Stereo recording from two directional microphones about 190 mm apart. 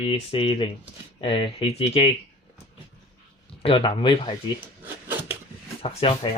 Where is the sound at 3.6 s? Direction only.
25° left (ahead or behind).